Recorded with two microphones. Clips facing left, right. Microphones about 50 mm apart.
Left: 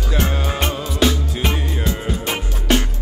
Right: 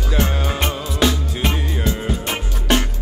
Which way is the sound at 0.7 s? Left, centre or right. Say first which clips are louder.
Left 1 dB; right.